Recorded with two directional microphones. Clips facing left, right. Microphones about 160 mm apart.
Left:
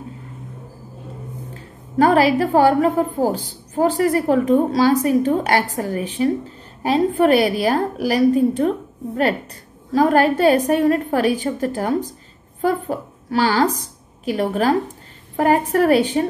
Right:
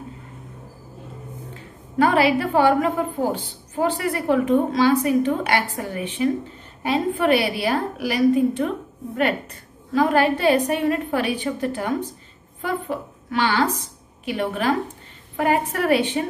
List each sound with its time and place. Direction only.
2.0 s a woman's voice: 40° left (ahead or behind)